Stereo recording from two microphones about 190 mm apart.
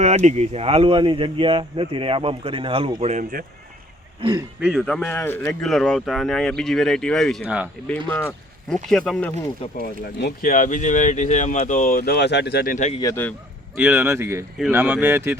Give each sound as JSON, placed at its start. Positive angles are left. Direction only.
{"t": 0.0, "sound": "speech", "side_deg": -35}
{"t": 4.2, "sound": "speech", "side_deg": -20}
{"t": 4.6, "sound": "a man's voice", "side_deg": 0}
{"t": 7.4, "sound": "speech", "side_deg": -5}
{"t": 7.9, "sound": "speech", "side_deg": 10}
{"t": 10.2, "sound": "speech", "side_deg": 60}
{"t": 10.5, "sound": "speech", "side_deg": 40}
{"t": 13.0, "sound": "a man's voice", "side_deg": 15}
{"t": 13.7, "sound": "speech", "side_deg": -10}